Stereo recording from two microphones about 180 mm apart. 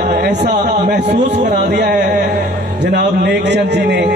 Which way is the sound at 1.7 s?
65° right (ahead or behind).